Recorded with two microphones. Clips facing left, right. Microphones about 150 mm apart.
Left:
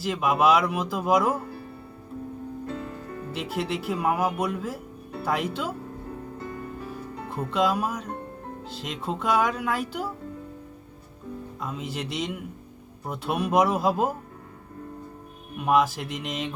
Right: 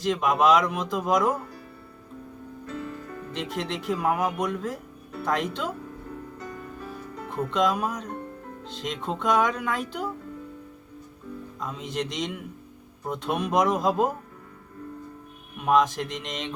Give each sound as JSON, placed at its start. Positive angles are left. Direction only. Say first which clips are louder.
{"t": 0.0, "sound": "speech", "louder": "even", "side_deg": 5}
{"t": 2.6, "sound": "music", "louder": "left 1 dB", "side_deg": 35}
{"t": 3.3, "sound": "speech", "louder": "left 2 dB", "side_deg": 5}
{"t": 6.4, "sound": "music", "louder": "left 2 dB", "side_deg": 30}
{"t": 7.5, "sound": "speech", "louder": "left 1 dB", "side_deg": 5}
{"t": 11.6, "sound": "speech", "louder": "right 2 dB", "side_deg": 5}
{"t": 15.6, "sound": "speech", "louder": "even", "side_deg": 5}